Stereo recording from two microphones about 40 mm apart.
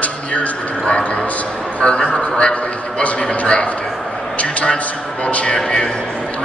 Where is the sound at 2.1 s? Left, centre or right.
Left.